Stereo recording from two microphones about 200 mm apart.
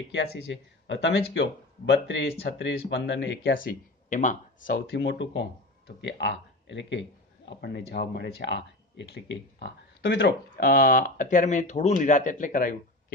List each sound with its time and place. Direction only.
0.1 s speech: 60° left (ahead or behind)
3.5 s speech: 40° left (ahead or behind)